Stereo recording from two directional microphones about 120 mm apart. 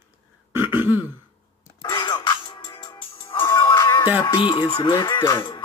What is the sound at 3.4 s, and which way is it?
Music, 20° left (ahead or behind).